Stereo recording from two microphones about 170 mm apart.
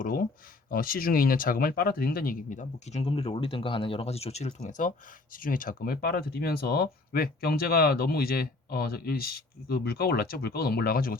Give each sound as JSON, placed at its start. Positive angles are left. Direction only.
{"t": 0.0, "sound": "speech", "side_deg": 55}